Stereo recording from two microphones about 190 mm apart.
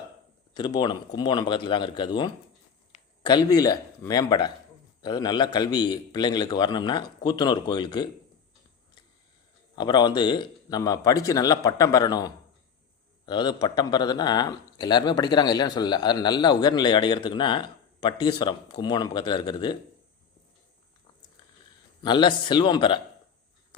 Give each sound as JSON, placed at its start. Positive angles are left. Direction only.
{"t": 0.5, "sound": "speech", "side_deg": 20}
{"t": 2.9, "sound": "a sound", "side_deg": 40}
{"t": 3.2, "sound": "speech", "side_deg": 20}
{"t": 9.7, "sound": "speech", "side_deg": 20}
{"t": 22.0, "sound": "speech", "side_deg": 25}